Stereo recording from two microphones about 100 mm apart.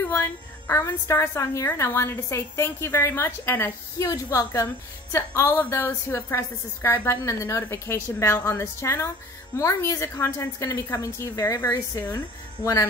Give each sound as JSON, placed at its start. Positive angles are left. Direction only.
{"t": 0.0, "sound": "a woman's voice", "side_deg": 25}